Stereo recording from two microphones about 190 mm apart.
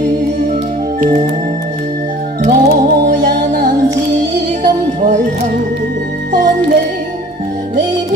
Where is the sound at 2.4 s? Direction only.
50° right (ahead or behind).